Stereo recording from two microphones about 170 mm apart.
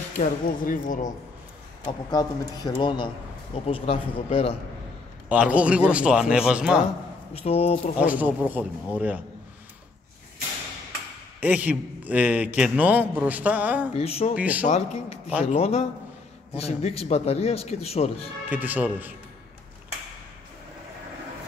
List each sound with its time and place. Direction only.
0.2 s speech: 50° left (ahead or behind)
1.9 s a man's voice: 25° left (ahead or behind)
5.3 s a man's voice: 10° right (ahead or behind)
7.3 s a man's voice: 35° left (ahead or behind)
8.0 s a man's voice: 10° right (ahead or behind)
11.4 s a man's voice: 10° right (ahead or behind)
13.9 s a man's voice: 35° left (ahead or behind)
14.3 s a man's voice: 10° right (ahead or behind)
14.7 s a man's voice: 35° left (ahead or behind)
18.5 s a man's voice: 10° right (ahead or behind)